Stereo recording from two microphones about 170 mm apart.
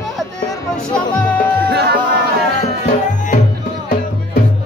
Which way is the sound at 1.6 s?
80° right.